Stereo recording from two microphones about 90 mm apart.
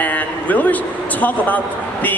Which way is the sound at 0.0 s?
15° left (ahead or behind).